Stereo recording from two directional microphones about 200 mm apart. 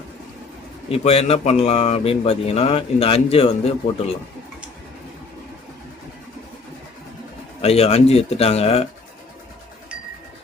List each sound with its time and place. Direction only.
0.9 s speech: 30° left (ahead or behind)
7.6 s speech: 30° left (ahead or behind)